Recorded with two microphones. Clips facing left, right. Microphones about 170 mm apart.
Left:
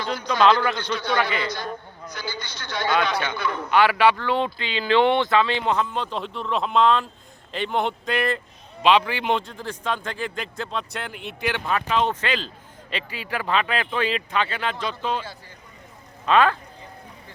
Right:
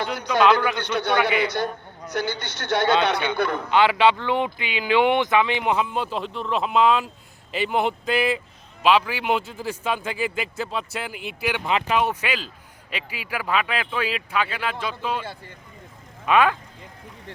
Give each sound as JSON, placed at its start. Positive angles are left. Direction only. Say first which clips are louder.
{"t": 0.3, "sound": "a man's voice", "louder": "even", "side_deg": -10}
{"t": 0.8, "sound": "a man's voice", "louder": "right 2 dB", "side_deg": -65}
{"t": 3.7, "sound": "a man's voice", "louder": "left 1 dB", "side_deg": -20}
{"t": 16.2, "sound": "a man's voice", "louder": "even", "side_deg": -10}